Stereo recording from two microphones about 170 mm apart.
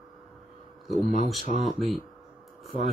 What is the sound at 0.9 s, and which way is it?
Speech, 50° left (ahead or behind).